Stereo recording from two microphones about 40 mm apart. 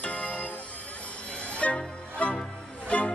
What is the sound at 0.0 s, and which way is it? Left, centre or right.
Music, left.